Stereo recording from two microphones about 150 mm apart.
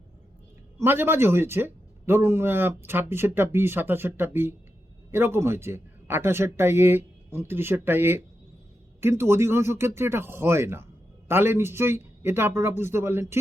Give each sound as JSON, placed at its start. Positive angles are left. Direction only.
{"t": 0.8, "sound": "speech", "side_deg": -15}